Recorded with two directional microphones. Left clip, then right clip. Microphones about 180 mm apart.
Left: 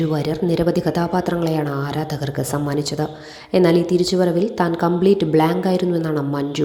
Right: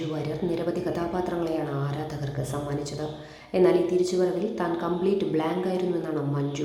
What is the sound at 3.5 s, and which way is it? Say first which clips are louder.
A woman's voice: left 6 dB; 40° left (ahead or behind).